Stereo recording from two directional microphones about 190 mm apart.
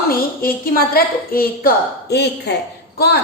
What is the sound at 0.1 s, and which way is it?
A woman's voice, 50° left (ahead or behind).